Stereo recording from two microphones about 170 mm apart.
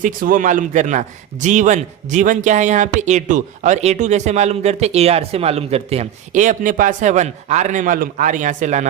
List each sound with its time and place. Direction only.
0.0 s a man's voice: 50° right (ahead or behind)